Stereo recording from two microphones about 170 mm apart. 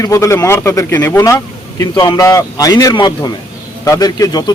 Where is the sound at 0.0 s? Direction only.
15° left (ahead or behind).